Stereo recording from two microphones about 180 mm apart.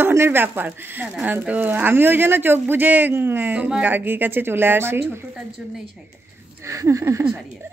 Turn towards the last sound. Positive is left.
turn(degrees=-10)  # may be behind; listen again after turning